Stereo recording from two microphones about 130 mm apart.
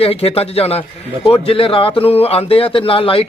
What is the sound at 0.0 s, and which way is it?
Speech, 50° left (ahead or behind).